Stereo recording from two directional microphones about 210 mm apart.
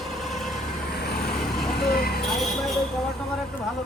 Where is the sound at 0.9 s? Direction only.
50° left (ahead or behind).